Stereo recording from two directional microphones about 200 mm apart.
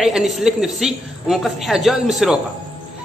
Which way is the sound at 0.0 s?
Centre (ahead or behind).